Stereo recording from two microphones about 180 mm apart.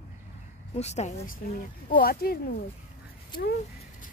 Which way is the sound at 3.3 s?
25° left (ahead or behind).